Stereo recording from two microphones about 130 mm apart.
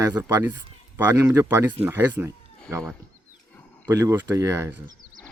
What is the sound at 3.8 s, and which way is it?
Speech, 25° right (ahead or behind).